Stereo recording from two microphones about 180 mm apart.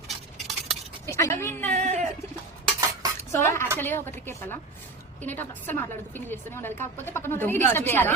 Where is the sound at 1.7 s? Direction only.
40° right (ahead or behind).